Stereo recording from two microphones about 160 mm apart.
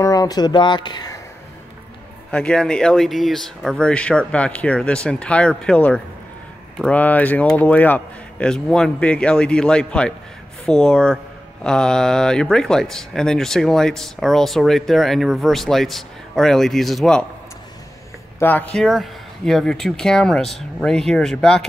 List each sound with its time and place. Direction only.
0.0 s speech: 20° left (ahead or behind)
2.3 s speech: 5° left (ahead or behind)
18.4 s speech: 10° left (ahead or behind)